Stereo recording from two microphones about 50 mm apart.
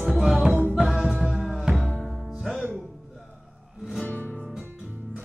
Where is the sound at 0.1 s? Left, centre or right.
Centre.